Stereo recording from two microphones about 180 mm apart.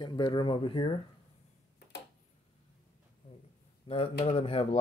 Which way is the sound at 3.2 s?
30° left (ahead or behind).